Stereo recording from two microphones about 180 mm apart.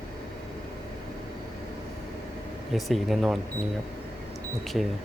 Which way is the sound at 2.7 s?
Centre (ahead or behind).